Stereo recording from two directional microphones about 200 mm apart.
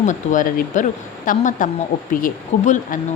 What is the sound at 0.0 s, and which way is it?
A woman's voice, 40° left (ahead or behind).